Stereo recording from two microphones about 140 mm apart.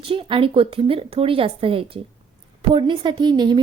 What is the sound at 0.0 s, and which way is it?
A woman's voice, 40° right (ahead or behind).